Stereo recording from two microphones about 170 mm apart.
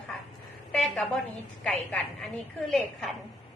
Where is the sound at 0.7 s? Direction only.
Centre (ahead or behind).